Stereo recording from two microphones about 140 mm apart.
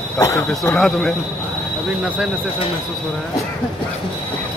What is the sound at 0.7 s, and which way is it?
Speech, 5° left (ahead or behind).